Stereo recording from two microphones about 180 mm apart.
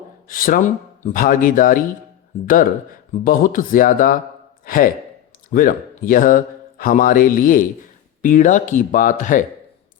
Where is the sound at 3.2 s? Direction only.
50° left (ahead or behind).